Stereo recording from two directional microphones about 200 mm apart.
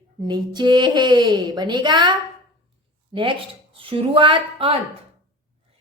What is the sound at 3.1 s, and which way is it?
A woman's voice, 25° right (ahead or behind).